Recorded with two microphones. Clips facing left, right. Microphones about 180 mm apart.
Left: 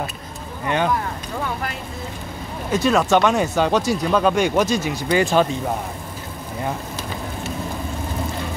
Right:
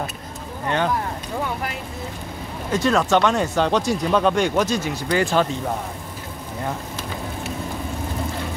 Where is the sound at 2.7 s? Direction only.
10° left (ahead or behind).